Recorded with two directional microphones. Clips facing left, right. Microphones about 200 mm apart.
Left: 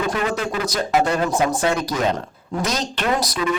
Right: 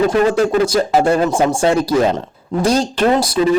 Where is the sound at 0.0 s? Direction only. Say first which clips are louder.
Right 9 dB; 35° right (ahead or behind).